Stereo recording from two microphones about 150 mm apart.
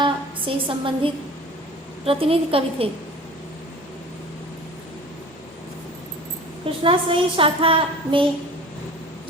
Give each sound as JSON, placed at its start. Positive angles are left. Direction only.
{"t": 0.0, "sound": "a sound", "side_deg": -35}
{"t": 2.0, "sound": "a woman's voice", "side_deg": -40}
{"t": 6.7, "sound": "a woman's voice", "side_deg": -35}